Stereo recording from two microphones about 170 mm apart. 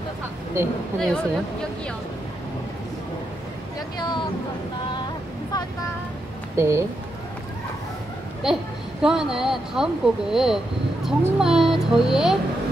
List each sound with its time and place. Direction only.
0.9 s speech: 5° left (ahead or behind)
4.0 s speech: 25° left (ahead or behind)
6.5 s speech: 15° right (ahead or behind)
8.4 s speech: 5° right (ahead or behind)